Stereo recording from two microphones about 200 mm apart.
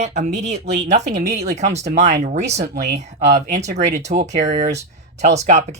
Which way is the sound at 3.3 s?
50° right (ahead or behind).